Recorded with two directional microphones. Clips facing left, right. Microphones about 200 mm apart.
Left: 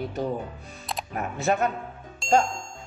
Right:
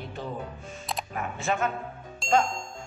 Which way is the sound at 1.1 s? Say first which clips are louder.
Left 5 dB; 40° left (ahead or behind).